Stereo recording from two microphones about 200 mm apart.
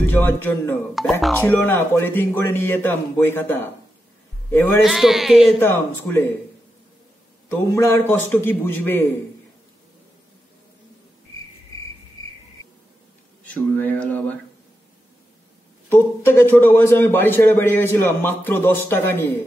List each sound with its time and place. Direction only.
0.0 s a man's voice: 10° left (ahead or behind)
1.0 s a man's voice: centre (ahead or behind)
1.3 s a man's voice: 10° left (ahead or behind)
4.8 s a man's voice: centre (ahead or behind)
5.6 s a man's voice: 10° left (ahead or behind)
7.4 s a man's voice: 10° left (ahead or behind)
12.2 s cricket: 20° left (ahead or behind)
13.5 s a man's voice: 5° left (ahead or behind)
15.9 s a man's voice: 10° left (ahead or behind)